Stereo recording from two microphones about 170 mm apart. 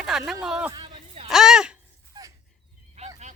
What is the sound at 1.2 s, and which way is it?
Baby cry, centre (ahead or behind).